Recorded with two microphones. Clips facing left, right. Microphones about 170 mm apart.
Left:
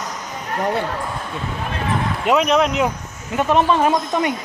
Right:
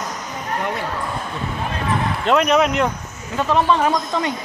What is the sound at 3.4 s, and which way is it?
Speech, 15° left (ahead or behind).